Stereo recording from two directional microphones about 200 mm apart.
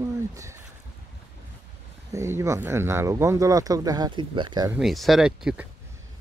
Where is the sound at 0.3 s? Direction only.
15° right (ahead or behind).